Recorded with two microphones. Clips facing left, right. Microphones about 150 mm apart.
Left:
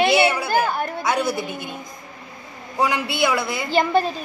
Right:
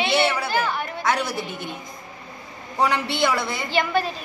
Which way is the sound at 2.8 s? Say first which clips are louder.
Left 1 dB; 5° left (ahead or behind).